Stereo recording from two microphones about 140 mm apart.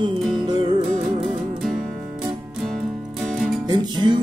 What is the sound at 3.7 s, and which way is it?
Music, 30° right (ahead or behind).